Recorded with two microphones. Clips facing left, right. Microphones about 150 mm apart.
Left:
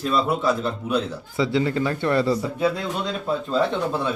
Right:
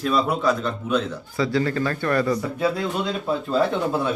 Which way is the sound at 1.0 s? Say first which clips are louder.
Left 1 dB; 25° left (ahead or behind).